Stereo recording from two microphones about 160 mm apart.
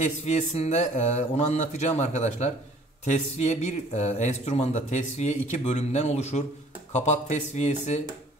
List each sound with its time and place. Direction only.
0.0 s speech: 45° left (ahead or behind)